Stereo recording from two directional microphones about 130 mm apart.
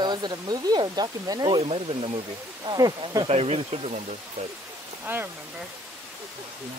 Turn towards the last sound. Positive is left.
turn(degrees=-15)  # may be behind; listen again after turning